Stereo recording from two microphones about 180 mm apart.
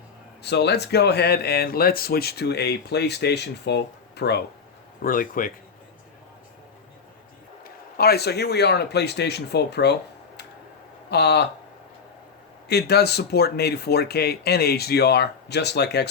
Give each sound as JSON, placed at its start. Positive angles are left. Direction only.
{"t": 0.4, "sound": "speech", "side_deg": 65}
{"t": 5.0, "sound": "speech", "side_deg": 50}
{"t": 7.6, "sound": "speech", "side_deg": 60}
{"t": 11.1, "sound": "speech", "side_deg": 65}
{"t": 12.6, "sound": "speech", "side_deg": 65}